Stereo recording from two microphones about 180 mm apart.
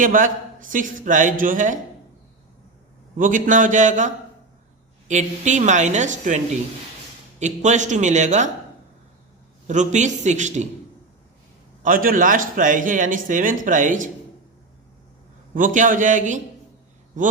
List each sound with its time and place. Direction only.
0.0 s speech: 45° right (ahead or behind)
3.2 s a woman's voice: 45° right (ahead or behind)
9.6 s a woman's voice: 45° right (ahead or behind)
11.8 s speech: 50° right (ahead or behind)
15.5 s speech: 45° right (ahead or behind)